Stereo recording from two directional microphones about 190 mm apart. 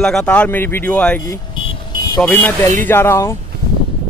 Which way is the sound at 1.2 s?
20° left (ahead or behind).